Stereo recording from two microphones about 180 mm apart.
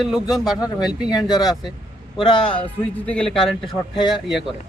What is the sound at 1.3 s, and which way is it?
Speech, 20° left (ahead or behind).